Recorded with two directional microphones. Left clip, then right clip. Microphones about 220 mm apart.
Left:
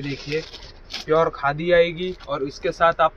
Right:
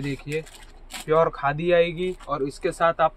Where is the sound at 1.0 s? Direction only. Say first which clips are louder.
Left 1 dB; 15° right (ahead or behind).